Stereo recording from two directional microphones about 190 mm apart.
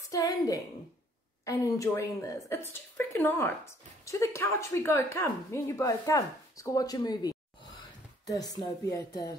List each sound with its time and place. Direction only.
0.1 s speech: 20° left (ahead or behind)